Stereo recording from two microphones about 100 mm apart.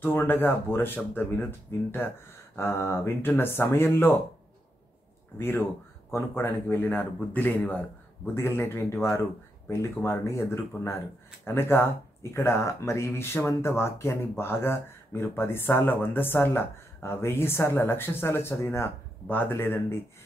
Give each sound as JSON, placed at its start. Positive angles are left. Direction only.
{"t": 0.0, "sound": "speech", "side_deg": 20}
{"t": 5.4, "sound": "speech", "side_deg": 20}